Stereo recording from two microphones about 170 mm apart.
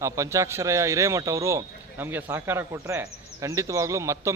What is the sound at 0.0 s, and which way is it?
A man's voice, 15° right (ahead or behind).